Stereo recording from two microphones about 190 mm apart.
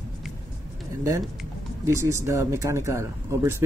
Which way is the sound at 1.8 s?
15° right (ahead or behind).